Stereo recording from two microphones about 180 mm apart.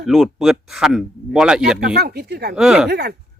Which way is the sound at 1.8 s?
60° right (ahead or behind).